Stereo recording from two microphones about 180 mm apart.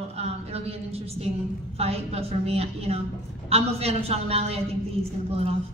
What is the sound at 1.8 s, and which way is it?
A man's voice, 35° right (ahead or behind).